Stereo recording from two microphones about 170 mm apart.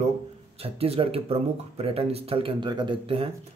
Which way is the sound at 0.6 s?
35° right (ahead or behind).